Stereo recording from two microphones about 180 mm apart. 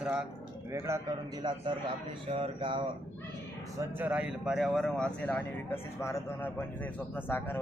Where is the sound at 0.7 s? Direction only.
15° right (ahead or behind).